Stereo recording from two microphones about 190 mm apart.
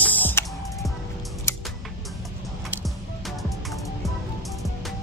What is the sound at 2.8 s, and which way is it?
Music, centre (ahead or behind).